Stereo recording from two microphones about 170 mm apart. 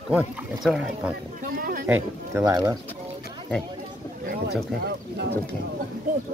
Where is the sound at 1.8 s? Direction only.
15° right (ahead or behind).